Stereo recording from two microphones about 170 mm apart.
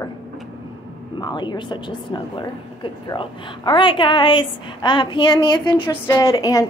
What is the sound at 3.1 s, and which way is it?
A woman's voice, 30° left (ahead or behind).